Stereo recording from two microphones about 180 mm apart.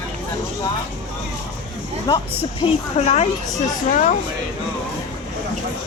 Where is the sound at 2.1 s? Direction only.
30° left (ahead or behind).